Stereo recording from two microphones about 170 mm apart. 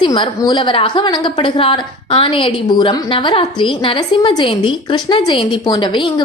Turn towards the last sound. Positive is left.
turn(degrees=25)  # may be behind; listen again after turning